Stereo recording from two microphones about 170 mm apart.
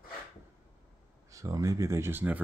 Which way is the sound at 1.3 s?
20° right (ahead or behind).